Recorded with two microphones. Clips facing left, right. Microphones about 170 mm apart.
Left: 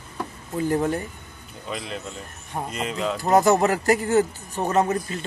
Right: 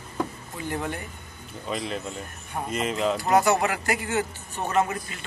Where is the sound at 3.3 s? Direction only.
35° left (ahead or behind).